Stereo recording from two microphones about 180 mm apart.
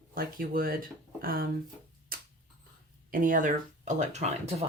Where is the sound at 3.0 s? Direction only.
50° right (ahead or behind).